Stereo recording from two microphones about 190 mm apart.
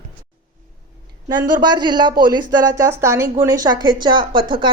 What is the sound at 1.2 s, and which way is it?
Speech, 20° right (ahead or behind).